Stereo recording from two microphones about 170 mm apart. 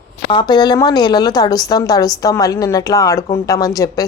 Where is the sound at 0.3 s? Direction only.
25° left (ahead or behind).